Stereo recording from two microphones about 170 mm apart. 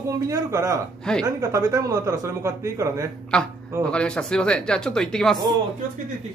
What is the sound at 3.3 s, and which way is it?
A man's voice, 5° left (ahead or behind).